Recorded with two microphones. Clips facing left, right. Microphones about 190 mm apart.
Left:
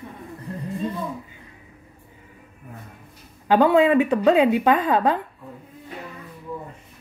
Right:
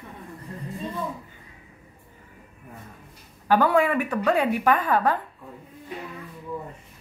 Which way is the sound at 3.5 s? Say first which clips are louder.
Left 4 dB; 20° left (ahead or behind).